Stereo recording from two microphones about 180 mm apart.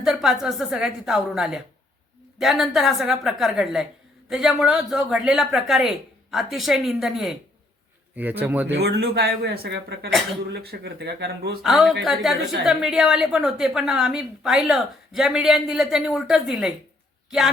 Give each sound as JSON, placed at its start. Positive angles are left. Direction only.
{"t": 0.0, "sound": "a woman's voice", "side_deg": 0}
{"t": 8.8, "sound": "speech", "side_deg": -65}
{"t": 11.6, "sound": "a woman's voice", "side_deg": 0}